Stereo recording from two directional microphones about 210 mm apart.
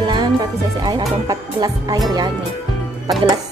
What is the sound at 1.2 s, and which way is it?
Music, 15° right (ahead or behind).